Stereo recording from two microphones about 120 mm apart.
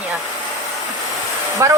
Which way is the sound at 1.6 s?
25° right (ahead or behind).